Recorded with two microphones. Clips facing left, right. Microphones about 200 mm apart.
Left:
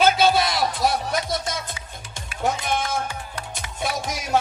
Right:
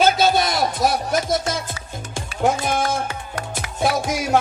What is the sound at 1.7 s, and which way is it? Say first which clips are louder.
Music: right 6 dB; 50° right (ahead or behind).